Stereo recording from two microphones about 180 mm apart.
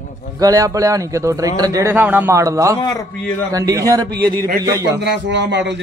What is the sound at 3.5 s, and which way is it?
Speech, 20° right (ahead or behind).